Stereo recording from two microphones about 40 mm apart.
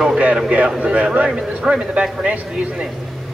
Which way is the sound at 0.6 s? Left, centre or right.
Right.